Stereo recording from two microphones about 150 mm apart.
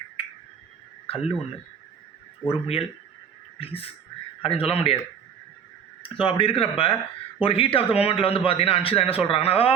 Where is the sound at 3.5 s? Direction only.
40° left (ahead or behind).